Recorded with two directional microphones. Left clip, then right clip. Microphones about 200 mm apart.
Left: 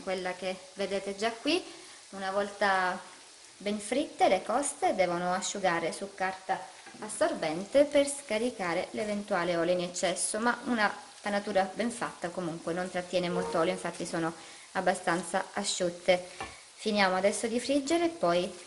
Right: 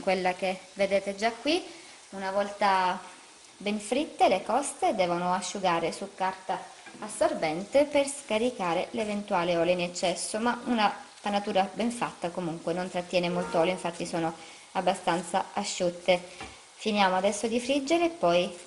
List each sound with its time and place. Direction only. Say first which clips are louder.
0.0 s a woman's voice: right 7 dB; 25° right (ahead or behind)
0.7 s speech: right 7 dB; centre (ahead or behind)
2.1 s speech: right 2 dB; 10° left (ahead or behind)